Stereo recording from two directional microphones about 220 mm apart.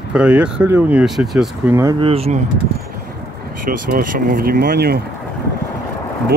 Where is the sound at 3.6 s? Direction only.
40° right (ahead or behind).